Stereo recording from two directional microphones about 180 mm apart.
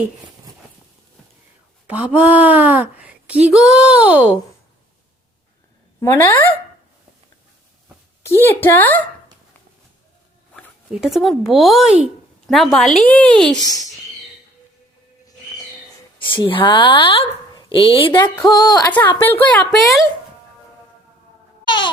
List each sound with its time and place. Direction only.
1.9 s speech: 5° right (ahead or behind)
6.0 s a woman's voice: 15° left (ahead or behind)
8.4 s a woman's voice: 10° left (ahead or behind)
11.0 s a woman's voice: centre (ahead or behind)
16.1 s speech: 30° left (ahead or behind)
18.9 s a woman's voice: 10° left (ahead or behind)